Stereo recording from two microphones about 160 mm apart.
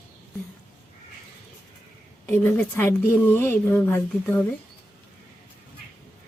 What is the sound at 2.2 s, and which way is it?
A woman's voice, 10° left (ahead or behind).